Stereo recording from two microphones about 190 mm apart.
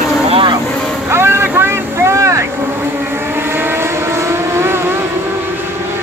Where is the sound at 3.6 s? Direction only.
15° right (ahead or behind).